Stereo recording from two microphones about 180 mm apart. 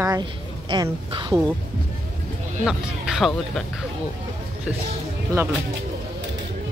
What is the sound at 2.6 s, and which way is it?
Speech, centre (ahead or behind).